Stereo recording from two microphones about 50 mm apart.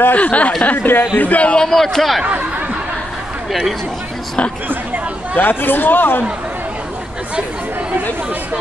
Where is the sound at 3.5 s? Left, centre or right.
Centre.